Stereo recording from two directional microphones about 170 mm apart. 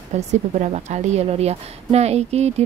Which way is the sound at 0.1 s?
40° right (ahead or behind).